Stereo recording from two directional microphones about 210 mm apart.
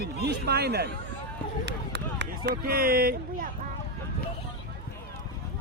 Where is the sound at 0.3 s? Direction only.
50° right (ahead or behind).